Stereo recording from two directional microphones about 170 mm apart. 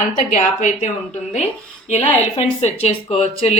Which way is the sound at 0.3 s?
40° left (ahead or behind).